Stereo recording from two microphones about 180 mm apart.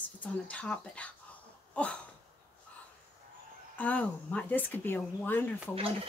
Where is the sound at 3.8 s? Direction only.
10° left (ahead or behind).